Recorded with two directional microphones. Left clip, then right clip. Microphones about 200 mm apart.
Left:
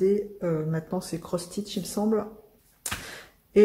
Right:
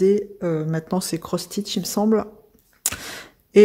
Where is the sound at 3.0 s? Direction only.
50° right (ahead or behind).